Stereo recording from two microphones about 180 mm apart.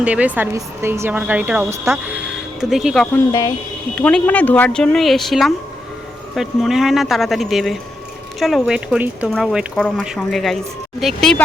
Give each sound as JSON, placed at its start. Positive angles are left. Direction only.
{"t": 0.0, "sound": "a woman's voice", "side_deg": -5}